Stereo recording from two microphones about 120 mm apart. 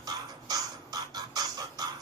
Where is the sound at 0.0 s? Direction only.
35° right (ahead or behind).